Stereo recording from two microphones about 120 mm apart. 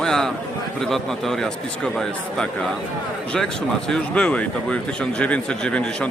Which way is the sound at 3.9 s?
5° left (ahead or behind).